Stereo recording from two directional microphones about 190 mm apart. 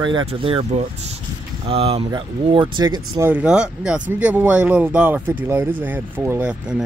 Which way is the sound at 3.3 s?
5° right (ahead or behind).